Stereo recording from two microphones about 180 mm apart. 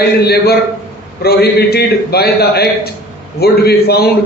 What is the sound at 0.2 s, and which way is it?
A man's voice, 60° left (ahead or behind).